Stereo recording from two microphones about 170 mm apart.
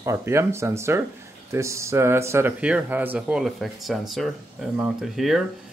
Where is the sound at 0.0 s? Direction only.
15° right (ahead or behind).